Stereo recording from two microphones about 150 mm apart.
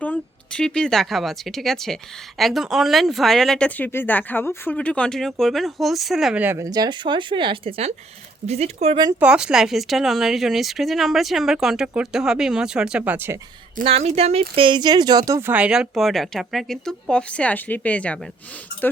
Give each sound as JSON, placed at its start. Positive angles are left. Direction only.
{"t": 0.0, "sound": "speech", "side_deg": 10}
{"t": 9.2, "sound": "speech", "side_deg": -5}
{"t": 13.8, "sound": "speech", "side_deg": -45}
{"t": 14.5, "sound": "speech", "side_deg": -35}